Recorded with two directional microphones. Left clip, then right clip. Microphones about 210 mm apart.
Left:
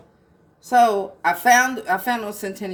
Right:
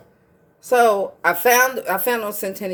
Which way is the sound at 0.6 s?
50° right (ahead or behind).